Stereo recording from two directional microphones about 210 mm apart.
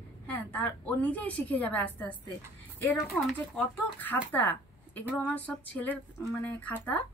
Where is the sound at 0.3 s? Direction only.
5° left (ahead or behind).